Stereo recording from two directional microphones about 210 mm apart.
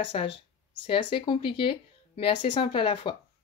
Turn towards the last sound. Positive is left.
turn(degrees=25)  # may be behind; listen again after turning